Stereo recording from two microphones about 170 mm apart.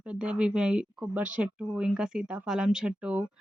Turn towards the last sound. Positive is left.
turn(degrees=-5)  # may be behind; listen again after turning